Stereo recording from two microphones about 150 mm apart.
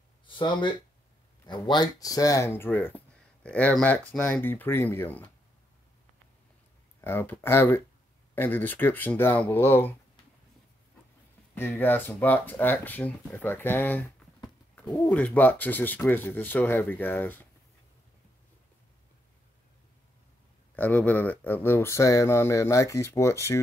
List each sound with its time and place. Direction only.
0.3 s speech: 35° left (ahead or behind); by 5.3 s 10° left (ahead or behind)
7.0 s speech: 15° left (ahead or behind)
11.5 s speech: 15° left (ahead or behind)
20.7 s speech: 10° left (ahead or behind)